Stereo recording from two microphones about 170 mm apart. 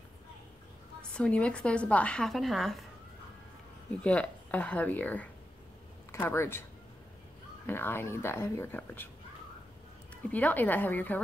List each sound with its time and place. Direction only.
1.1 s a woman's voice: 5° left (ahead or behind)
4.0 s speech: 5° left (ahead or behind)
7.6 s speech: 10° left (ahead or behind)
10.3 s speech: 10° left (ahead or behind)